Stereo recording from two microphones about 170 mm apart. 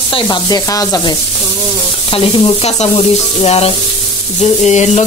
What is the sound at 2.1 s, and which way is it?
Sizzle, 30° left (ahead or behind).